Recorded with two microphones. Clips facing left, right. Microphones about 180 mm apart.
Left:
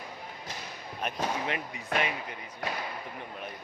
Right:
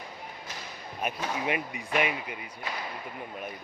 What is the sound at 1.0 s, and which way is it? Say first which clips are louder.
Speech: right 1 dB; 10° right (ahead or behind).